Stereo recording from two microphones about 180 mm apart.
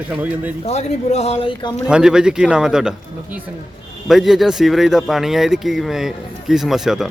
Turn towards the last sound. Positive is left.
turn(degrees=0)  # may be behind; listen again after turning